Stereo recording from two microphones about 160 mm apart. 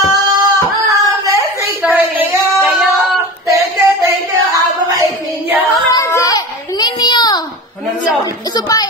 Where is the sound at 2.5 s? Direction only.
Centre (ahead or behind).